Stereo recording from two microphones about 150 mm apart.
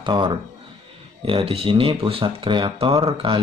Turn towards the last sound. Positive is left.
turn(degrees=-35)  # may be behind; listen again after turning